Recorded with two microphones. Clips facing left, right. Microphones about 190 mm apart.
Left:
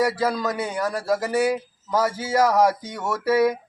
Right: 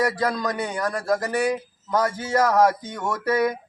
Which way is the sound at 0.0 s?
5° left (ahead or behind).